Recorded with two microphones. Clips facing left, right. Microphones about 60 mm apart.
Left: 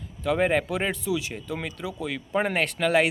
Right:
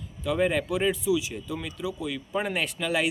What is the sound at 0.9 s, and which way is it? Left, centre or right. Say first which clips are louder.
Speech: right 2 dB; left.